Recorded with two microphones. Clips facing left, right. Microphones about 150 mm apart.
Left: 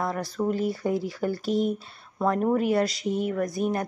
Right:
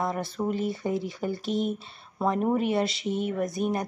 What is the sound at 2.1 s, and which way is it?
Speech, 10° right (ahead or behind).